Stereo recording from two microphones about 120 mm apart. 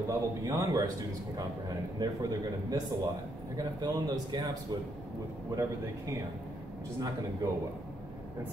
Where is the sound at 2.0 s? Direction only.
30° right (ahead or behind).